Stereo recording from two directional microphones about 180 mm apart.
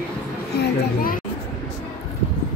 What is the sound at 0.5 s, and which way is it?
Speech, 50° left (ahead or behind).